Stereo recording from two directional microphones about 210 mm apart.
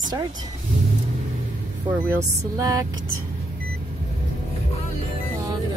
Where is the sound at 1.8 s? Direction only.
20° right (ahead or behind).